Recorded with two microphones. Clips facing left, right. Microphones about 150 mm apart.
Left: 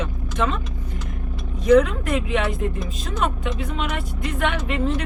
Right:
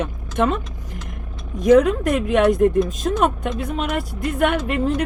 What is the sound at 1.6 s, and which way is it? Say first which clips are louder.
Speech: right 2 dB; 45° right (ahead or behind).